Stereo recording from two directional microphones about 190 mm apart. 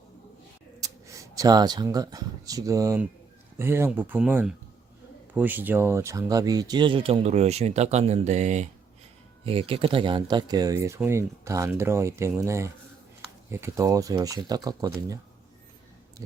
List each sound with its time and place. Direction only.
0.8 s speech: 15° right (ahead or behind)